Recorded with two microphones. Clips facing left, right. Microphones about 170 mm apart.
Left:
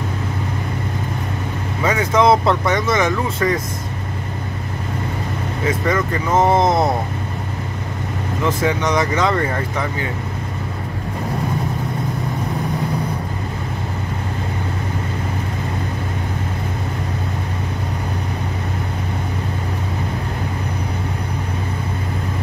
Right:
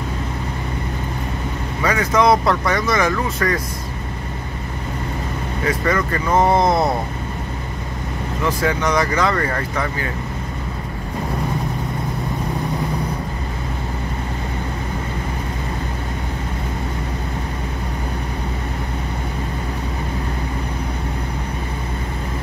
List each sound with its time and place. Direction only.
1.8 s speech: 20° left (ahead or behind)
5.7 s speech: 20° left (ahead or behind)
8.5 s speech: 20° left (ahead or behind)